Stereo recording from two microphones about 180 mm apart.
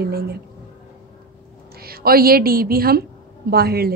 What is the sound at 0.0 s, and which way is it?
Speech, 60° right (ahead or behind).